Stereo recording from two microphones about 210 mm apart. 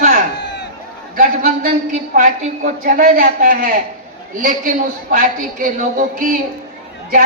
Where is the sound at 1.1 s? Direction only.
40° right (ahead or behind).